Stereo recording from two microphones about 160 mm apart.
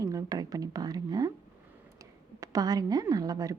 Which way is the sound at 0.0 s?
20° right (ahead or behind).